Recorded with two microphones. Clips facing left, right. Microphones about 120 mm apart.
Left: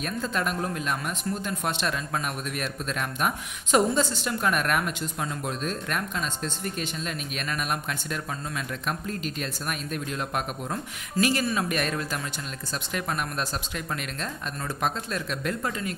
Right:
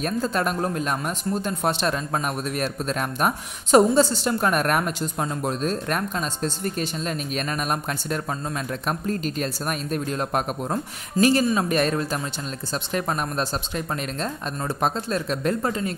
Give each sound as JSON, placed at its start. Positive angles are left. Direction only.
{"t": 0.0, "sound": "a man's voice", "side_deg": -35}